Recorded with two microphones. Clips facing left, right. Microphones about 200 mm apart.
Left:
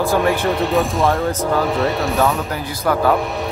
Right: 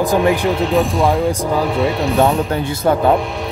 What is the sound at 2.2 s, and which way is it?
Speech, 30° right (ahead or behind).